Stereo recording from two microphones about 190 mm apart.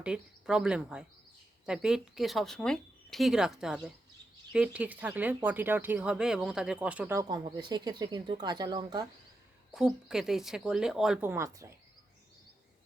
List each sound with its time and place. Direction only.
0.0 s speech: 5° right (ahead or behind)
7.2 s speech: 20° right (ahead or behind)
9.7 s speech: 5° right (ahead or behind)